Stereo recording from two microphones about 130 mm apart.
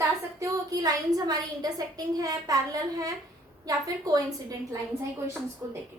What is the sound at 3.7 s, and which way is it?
Speech, 25° right (ahead or behind).